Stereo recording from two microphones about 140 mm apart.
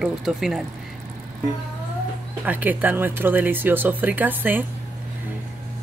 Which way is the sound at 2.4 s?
10° right (ahead or behind).